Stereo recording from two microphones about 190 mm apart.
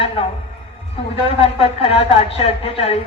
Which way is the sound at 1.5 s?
30° left (ahead or behind).